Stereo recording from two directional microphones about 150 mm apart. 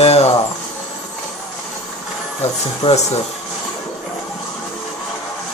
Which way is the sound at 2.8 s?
45° left (ahead or behind).